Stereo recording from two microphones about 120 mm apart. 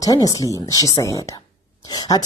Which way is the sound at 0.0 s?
30° left (ahead or behind).